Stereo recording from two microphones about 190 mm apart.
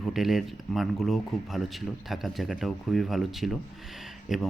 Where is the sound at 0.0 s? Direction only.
Centre (ahead or behind).